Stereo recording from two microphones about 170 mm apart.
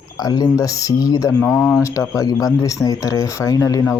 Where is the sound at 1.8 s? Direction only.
20° left (ahead or behind).